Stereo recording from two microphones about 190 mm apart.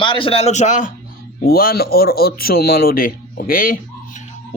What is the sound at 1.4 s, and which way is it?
Speech, 55° left (ahead or behind).